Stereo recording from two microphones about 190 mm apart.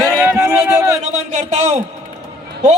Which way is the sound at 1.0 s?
35° right (ahead or behind).